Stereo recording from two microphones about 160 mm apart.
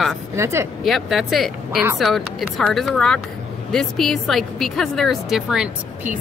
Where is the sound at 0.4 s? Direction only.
15° right (ahead or behind).